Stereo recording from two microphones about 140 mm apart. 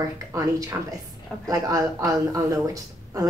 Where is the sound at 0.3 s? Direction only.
25° right (ahead or behind).